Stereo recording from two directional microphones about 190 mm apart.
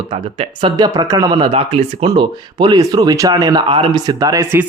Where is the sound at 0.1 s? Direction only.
30° right (ahead or behind).